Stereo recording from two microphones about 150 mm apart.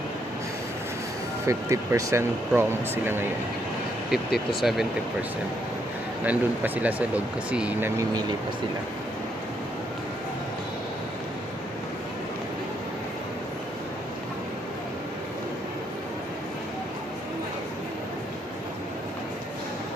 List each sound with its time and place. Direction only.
1.5 s speech: 20° right (ahead or behind)
4.1 s speech: centre (ahead or behind)
6.2 s speech: 10° right (ahead or behind)